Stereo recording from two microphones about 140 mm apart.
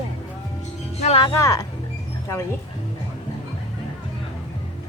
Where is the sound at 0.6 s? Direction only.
55° left (ahead or behind).